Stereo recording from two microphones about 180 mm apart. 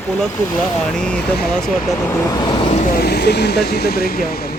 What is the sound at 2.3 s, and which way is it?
Speech, 25° left (ahead or behind).